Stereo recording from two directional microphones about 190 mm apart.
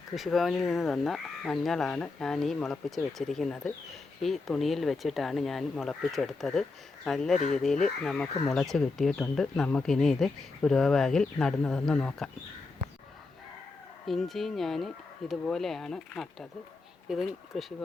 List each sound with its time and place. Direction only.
0.1 s speech: centre (ahead or behind)
14.1 s speech: centre (ahead or behind)